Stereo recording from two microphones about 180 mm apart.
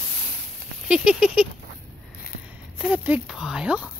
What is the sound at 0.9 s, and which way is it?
Patter, 5° right (ahead or behind).